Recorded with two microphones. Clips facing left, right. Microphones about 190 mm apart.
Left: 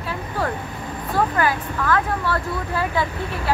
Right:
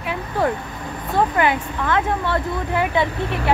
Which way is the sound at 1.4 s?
20° right (ahead or behind).